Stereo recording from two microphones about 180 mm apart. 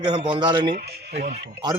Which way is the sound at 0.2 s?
25° right (ahead or behind).